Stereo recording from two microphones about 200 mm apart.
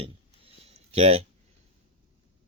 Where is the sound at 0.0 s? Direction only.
30° right (ahead or behind).